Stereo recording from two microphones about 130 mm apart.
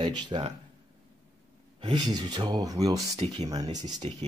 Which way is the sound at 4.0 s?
55° right (ahead or behind).